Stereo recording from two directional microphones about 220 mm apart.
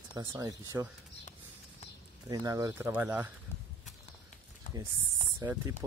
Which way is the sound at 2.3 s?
15° right (ahead or behind).